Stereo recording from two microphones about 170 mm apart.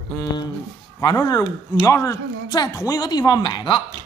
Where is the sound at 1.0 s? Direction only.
25° left (ahead or behind).